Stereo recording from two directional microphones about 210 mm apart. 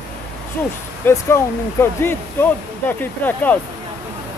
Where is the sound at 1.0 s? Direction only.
10° left (ahead or behind).